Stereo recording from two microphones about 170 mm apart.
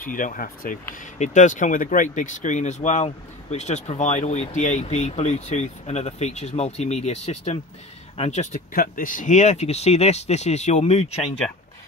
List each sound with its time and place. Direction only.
0.0 s speech: 55° left (ahead or behind)